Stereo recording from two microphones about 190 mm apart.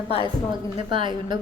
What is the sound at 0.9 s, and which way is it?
Speech, 25° right (ahead or behind).